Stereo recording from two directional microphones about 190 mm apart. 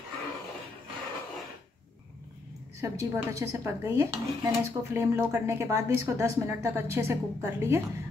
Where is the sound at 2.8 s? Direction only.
15° right (ahead or behind).